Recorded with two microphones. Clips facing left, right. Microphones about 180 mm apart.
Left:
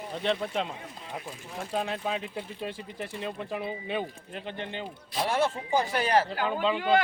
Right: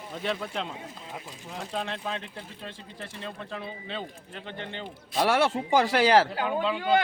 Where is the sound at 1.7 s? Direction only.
5° left (ahead or behind).